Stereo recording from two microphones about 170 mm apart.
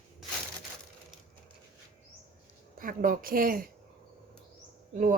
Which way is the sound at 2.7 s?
55° right (ahead or behind).